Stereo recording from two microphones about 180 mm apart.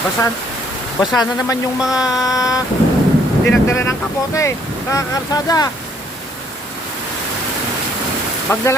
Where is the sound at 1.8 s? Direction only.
5° right (ahead or behind).